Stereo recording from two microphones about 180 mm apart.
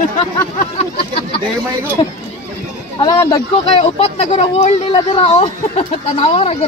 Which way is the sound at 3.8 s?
35° left (ahead or behind).